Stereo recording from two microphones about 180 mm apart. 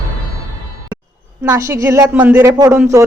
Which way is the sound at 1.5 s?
15° right (ahead or behind).